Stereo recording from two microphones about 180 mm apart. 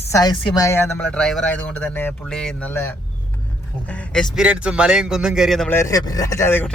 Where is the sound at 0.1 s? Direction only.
20° left (ahead or behind); by 5.7 s centre (ahead or behind).